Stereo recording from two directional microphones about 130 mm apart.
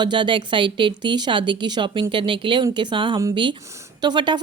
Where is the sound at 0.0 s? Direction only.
35° right (ahead or behind).